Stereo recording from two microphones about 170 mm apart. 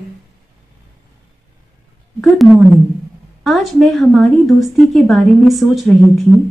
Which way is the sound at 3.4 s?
Centre (ahead or behind).